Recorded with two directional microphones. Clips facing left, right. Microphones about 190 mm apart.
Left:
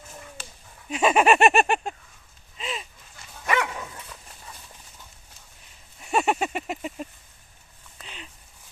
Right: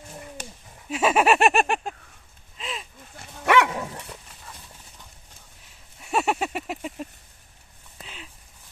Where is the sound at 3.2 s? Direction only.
70° right (ahead or behind).